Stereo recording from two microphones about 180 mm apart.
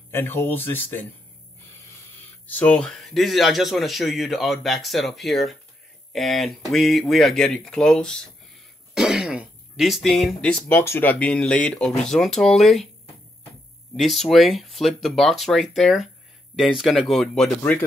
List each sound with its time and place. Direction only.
0.1 s speech: 10° left (ahead or behind)
2.4 s speech: 5° left (ahead or behind)
13.9 s speech: centre (ahead or behind)